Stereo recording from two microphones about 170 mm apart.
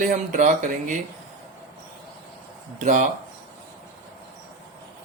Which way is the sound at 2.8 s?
45° right (ahead or behind).